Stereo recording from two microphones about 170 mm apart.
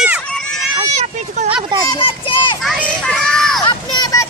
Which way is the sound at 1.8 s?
30° left (ahead or behind).